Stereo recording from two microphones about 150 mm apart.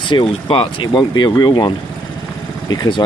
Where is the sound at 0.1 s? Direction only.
35° left (ahead or behind).